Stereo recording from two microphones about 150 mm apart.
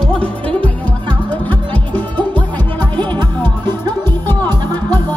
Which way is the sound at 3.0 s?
30° right (ahead or behind).